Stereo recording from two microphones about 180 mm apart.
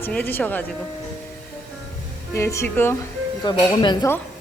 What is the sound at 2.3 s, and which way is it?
Speech, 15° left (ahead or behind).